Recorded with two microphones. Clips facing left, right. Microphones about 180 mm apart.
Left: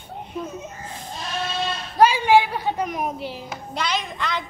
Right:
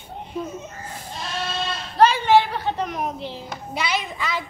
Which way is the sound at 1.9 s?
10° left (ahead or behind).